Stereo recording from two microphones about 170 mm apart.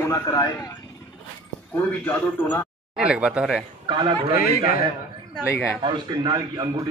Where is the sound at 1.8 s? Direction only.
10° left (ahead or behind).